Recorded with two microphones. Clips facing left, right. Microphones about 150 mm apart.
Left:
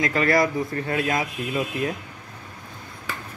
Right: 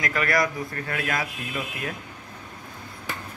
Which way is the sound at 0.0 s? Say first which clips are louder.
Left 4 dB; 30° left (ahead or behind).